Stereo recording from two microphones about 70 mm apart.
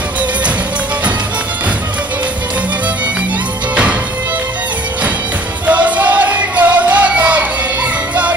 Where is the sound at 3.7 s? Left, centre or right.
Centre.